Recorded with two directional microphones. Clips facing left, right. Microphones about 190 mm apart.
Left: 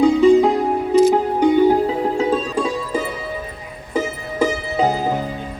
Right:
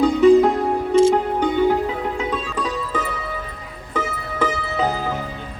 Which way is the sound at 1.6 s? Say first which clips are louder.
Left 4 dB; 35° left (ahead or behind).